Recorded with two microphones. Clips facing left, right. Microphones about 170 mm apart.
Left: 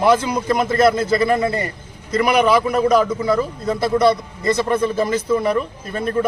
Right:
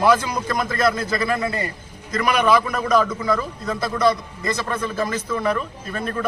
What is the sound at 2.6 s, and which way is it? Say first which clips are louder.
A man's voice: left 4 dB; 25° left (ahead or behind).